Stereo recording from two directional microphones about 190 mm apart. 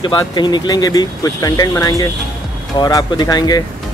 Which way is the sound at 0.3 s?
25° left (ahead or behind).